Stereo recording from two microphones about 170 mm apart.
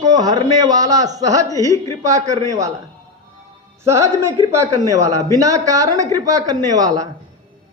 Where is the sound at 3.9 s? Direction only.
15° right (ahead or behind).